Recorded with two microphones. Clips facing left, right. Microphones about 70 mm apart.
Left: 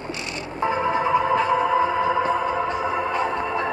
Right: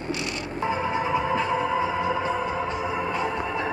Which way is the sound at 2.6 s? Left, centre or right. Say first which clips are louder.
Left 4 dB; centre.